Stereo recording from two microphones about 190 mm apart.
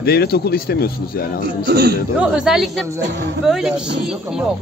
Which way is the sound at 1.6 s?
60° right (ahead or behind).